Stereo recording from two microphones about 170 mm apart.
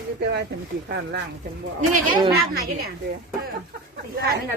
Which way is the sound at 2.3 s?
65° right (ahead or behind).